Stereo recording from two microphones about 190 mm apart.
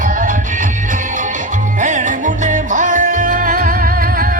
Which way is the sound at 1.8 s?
40° right (ahead or behind).